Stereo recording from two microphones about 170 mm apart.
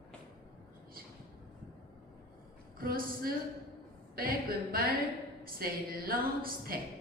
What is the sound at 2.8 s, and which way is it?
Speech, 60° right (ahead or behind).